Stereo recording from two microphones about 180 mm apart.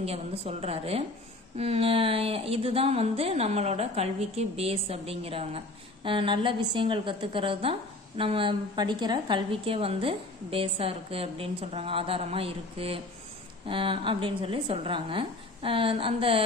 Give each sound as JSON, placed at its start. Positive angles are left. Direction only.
{"t": 0.0, "sound": "a woman's voice", "side_deg": -35}